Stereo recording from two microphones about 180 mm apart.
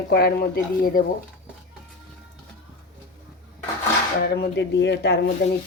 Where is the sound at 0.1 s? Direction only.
60° left (ahead or behind).